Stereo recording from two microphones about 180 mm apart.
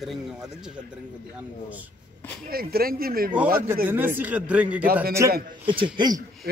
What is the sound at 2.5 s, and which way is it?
Speech, 55° right (ahead or behind).